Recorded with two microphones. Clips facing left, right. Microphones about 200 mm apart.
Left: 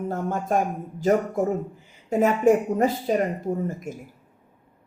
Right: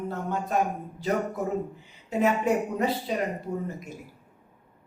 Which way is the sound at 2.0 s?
50° left (ahead or behind).